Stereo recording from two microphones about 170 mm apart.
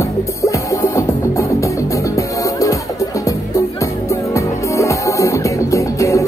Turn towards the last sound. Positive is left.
turn(degrees=20)  # may be behind; listen again after turning